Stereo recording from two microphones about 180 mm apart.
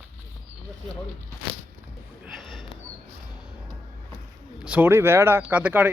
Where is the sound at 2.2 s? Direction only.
Centre (ahead or behind).